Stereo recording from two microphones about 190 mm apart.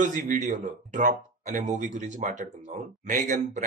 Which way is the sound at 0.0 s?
40° right (ahead or behind).